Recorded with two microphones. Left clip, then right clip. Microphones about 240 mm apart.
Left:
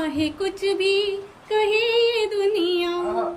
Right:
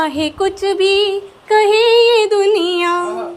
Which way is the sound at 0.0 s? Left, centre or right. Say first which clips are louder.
Right 8 dB; centre.